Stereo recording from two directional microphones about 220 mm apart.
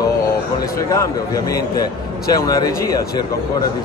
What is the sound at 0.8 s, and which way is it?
Speech, 15° left (ahead or behind).